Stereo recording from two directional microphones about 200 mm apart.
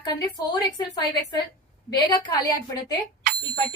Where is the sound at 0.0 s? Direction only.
20° left (ahead or behind).